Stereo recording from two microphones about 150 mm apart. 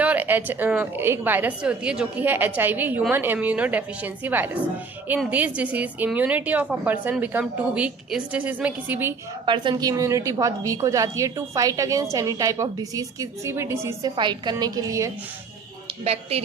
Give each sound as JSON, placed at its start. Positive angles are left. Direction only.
{"t": 0.0, "sound": "a woman's voice", "side_deg": -10}
{"t": 9.5, "sound": "a woman's voice", "side_deg": -30}
{"t": 14.2, "sound": "a woman's voice", "side_deg": -30}